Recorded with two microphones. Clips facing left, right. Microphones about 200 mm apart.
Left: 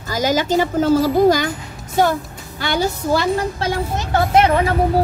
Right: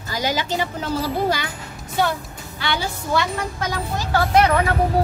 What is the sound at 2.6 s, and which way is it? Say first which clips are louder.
Speech: left 6 dB; 45° left (ahead or behind).